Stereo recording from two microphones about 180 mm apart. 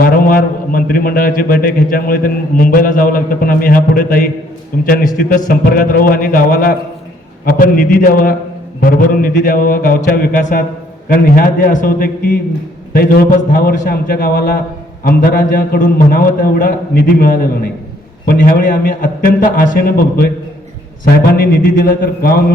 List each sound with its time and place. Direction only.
0.0 s a man's voice: 50° left (ahead or behind)
21.4 s a man's voice: 50° left (ahead or behind)